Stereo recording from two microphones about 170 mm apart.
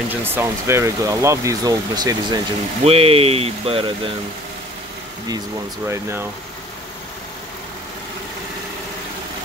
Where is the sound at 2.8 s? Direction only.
35° right (ahead or behind).